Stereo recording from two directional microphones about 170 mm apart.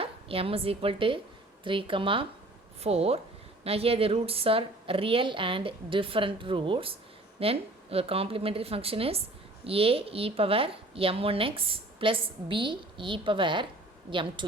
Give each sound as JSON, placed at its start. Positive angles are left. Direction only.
{"t": 0.0, "sound": "a woman's voice", "side_deg": -35}